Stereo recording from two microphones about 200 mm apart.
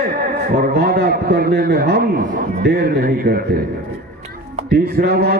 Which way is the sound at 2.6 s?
55° right (ahead or behind).